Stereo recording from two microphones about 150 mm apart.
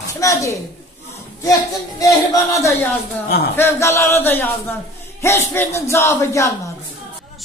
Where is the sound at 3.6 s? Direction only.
20° left (ahead or behind).